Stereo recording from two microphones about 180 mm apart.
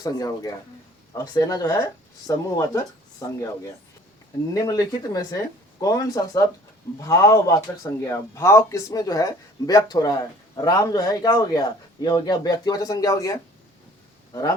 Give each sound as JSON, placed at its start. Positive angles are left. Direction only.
{"t": 0.0, "sound": "speech", "side_deg": 20}